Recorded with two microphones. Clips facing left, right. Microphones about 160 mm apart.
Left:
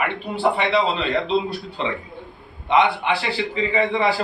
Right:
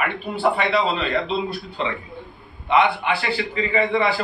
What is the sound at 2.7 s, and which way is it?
Speech, 25° left (ahead or behind).